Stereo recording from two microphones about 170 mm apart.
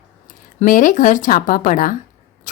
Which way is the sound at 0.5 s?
50° left (ahead or behind).